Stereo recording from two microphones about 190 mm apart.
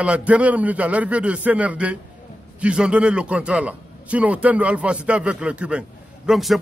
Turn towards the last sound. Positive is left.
turn(degrees=0)  # may be behind; listen again after turning